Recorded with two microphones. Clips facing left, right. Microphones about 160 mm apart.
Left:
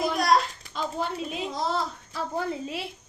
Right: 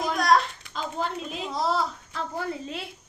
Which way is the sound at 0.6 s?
45° left (ahead or behind).